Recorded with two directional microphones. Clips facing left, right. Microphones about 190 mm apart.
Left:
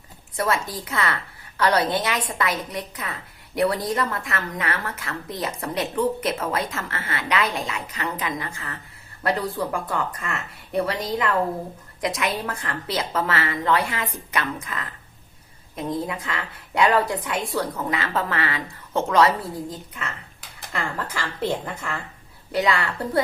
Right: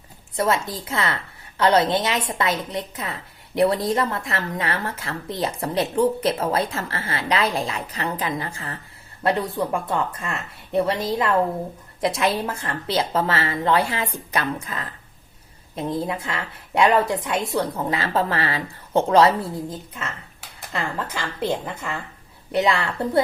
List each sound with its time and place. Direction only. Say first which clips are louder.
0.3 s a woman's voice: right 2 dB; 25° right (ahead or behind)
16.0 s speech: right 2 dB; 30° right (ahead or behind)
21.1 s a woman's voice: even; 15° right (ahead or behind)